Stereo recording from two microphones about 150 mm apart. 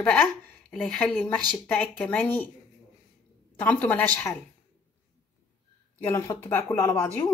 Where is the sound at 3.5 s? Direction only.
10° left (ahead or behind).